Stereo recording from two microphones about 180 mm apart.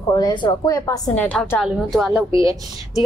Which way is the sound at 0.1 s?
25° left (ahead or behind).